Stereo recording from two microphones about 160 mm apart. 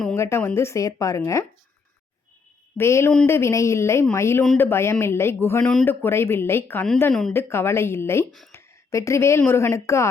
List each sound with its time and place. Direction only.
0.2 s speech: 15° left (ahead or behind)
2.7 s speech: 15° left (ahead or behind)
7.1 s speech: centre (ahead or behind)
7.3 s speech: 15° left (ahead or behind)
8.5 s a sound: 20° left (ahead or behind)
9.5 s speech: 15° left (ahead or behind)